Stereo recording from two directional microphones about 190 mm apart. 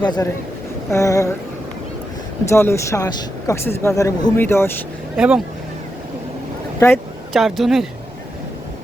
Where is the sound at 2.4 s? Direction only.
15° left (ahead or behind).